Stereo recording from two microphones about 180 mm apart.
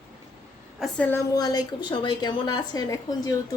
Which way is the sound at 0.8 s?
10° left (ahead or behind).